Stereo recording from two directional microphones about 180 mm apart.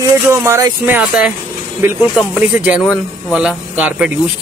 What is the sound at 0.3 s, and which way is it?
Speech, 15° right (ahead or behind).